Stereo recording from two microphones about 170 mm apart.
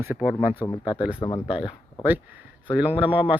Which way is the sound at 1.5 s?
10° right (ahead or behind).